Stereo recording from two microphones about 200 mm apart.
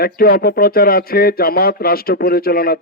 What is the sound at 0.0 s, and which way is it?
Speech, 50° left (ahead or behind).